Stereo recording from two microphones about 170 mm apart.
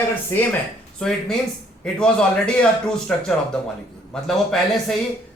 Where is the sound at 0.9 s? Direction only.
5° left (ahead or behind).